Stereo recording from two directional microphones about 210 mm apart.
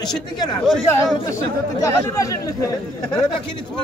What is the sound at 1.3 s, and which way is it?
Speech, 15° left (ahead or behind).